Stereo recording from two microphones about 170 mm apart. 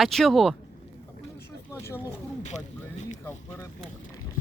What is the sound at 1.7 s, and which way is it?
Speech, 15° left (ahead or behind).